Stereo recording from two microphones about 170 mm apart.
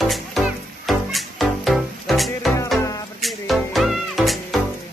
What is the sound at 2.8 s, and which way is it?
Music, 20° left (ahead or behind).